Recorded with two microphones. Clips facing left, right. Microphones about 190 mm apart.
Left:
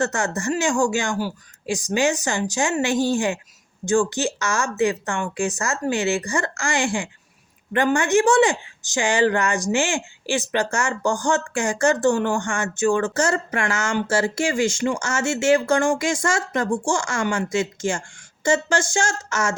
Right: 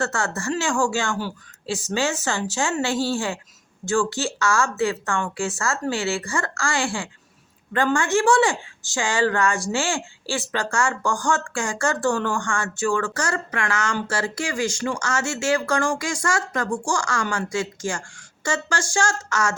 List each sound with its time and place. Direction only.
0.0 s speech: 20° left (ahead or behind)